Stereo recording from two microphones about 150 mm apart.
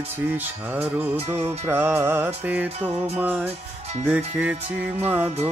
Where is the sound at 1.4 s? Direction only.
45° right (ahead or behind).